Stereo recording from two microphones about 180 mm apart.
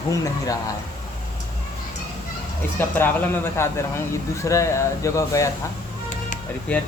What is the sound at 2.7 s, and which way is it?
Speech, 10° left (ahead or behind).